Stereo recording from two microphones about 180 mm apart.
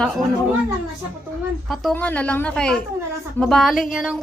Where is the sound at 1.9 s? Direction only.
10° left (ahead or behind).